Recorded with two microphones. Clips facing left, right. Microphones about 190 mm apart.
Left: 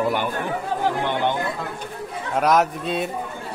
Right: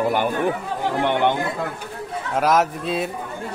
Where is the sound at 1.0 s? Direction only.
65° right (ahead or behind).